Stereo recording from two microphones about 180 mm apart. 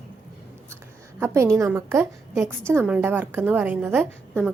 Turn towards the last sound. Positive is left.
turn(degrees=-10)  # may be behind; listen again after turning